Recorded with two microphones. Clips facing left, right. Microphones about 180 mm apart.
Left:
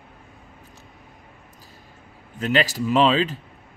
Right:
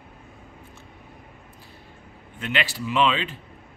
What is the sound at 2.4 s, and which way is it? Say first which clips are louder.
Speech: left 6 dB; 40° left (ahead or behind).